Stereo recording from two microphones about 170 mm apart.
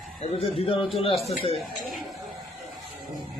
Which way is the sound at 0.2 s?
35° left (ahead or behind).